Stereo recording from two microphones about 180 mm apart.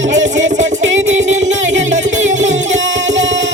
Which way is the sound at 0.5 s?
40° right (ahead or behind).